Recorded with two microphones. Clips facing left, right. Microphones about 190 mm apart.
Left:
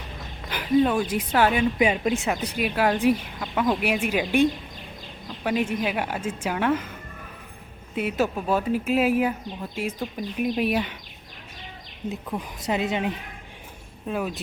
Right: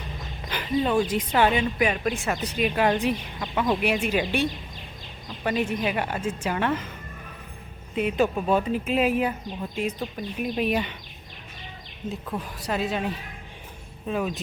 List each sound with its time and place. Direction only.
0.9 s a woman's voice: 10° left (ahead or behind)
1.8 s a woman's voice: 20° left (ahead or behind)
7.9 s a woman's voice: 5° left (ahead or behind)
12.3 s a woman's voice: 15° left (ahead or behind)
14.1 s speech: 5° left (ahead or behind)